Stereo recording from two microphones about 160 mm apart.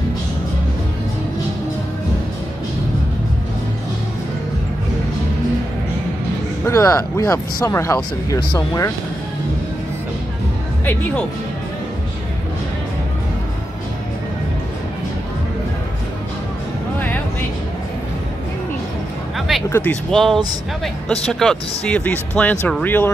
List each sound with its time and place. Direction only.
6.6 s speech: 20° left (ahead or behind)
19.3 s a sound: centre (ahead or behind)
19.7 s speech: 10° left (ahead or behind)